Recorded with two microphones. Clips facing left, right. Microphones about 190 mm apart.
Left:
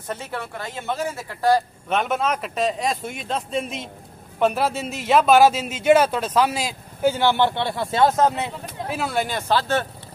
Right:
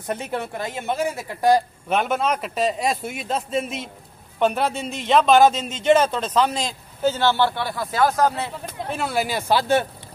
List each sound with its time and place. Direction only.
0.1 s speech: 20° right (ahead or behind)
1.9 s a man's voice: centre (ahead or behind); by 8.5 s 20° left (ahead or behind)
8.8 s speech: centre (ahead or behind)